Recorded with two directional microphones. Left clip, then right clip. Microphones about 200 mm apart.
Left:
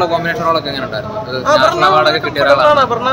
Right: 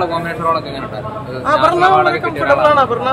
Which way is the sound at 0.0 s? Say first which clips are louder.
Left 3 dB; 35° left (ahead or behind).